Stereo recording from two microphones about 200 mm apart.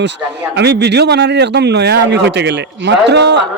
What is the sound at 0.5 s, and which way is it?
A man's voice, 55° right (ahead or behind).